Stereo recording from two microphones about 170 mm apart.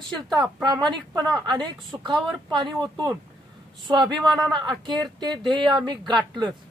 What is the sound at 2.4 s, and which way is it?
Speech, 25° right (ahead or behind).